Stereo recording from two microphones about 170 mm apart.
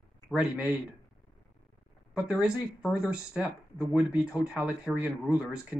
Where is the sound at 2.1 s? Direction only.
5° right (ahead or behind).